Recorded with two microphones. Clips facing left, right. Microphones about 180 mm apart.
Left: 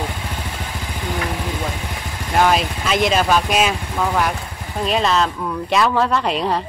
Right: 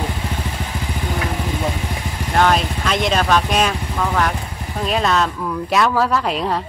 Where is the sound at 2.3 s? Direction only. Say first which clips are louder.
Even; 5° left (ahead or behind).